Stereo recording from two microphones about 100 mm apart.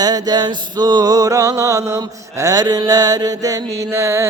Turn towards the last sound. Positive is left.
turn(degrees=-30)  # may be behind; listen again after turning